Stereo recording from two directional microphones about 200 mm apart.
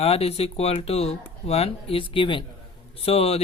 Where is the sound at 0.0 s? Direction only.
30° left (ahead or behind).